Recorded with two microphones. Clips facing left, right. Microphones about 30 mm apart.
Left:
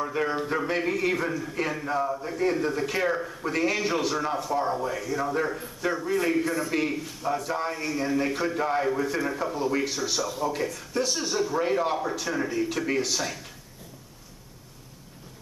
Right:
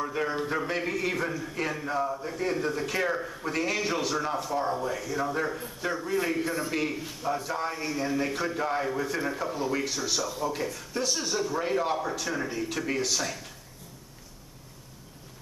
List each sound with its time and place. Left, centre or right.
0.0 s a man's voice: centre
7.0 s a man's voice: centre
7.2 s a man's voice: centre